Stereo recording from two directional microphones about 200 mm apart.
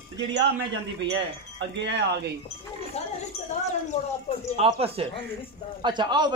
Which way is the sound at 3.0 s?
30° left (ahead or behind).